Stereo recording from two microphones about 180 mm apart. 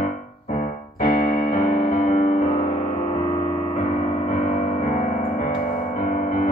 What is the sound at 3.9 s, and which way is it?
Music, 45° left (ahead or behind).